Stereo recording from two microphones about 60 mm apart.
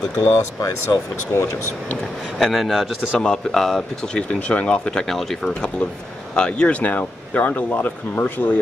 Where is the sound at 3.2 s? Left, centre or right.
Centre; by 8.5 s left.